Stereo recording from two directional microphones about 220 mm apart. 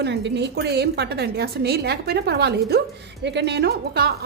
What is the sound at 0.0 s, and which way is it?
A woman's voice, 50° right (ahead or behind).